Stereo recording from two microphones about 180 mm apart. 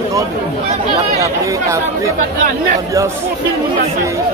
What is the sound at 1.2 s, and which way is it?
Speech, 15° right (ahead or behind).